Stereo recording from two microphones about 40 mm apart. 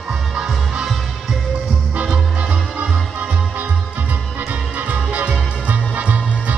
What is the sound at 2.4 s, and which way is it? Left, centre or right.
Music, right.